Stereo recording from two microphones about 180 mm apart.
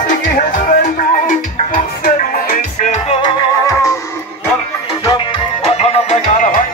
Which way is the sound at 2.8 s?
40° left (ahead or behind).